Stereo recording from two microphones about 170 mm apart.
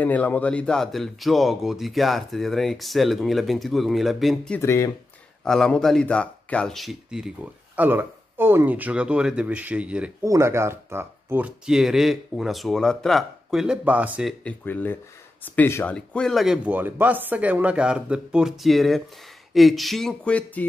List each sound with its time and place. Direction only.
0.0 s speech: 10° left (ahead or behind)
4.6 s speech: 15° left (ahead or behind)
5.4 s speech: 5° left (ahead or behind)
14.4 s speech: 10° left (ahead or behind)